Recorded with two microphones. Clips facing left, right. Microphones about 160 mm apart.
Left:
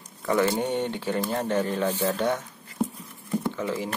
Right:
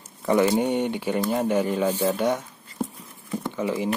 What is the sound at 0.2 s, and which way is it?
Speech, 20° right (ahead or behind).